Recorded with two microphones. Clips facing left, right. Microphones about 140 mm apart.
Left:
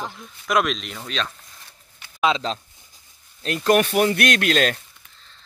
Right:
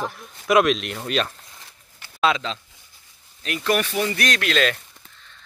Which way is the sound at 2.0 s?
15° left (ahead or behind).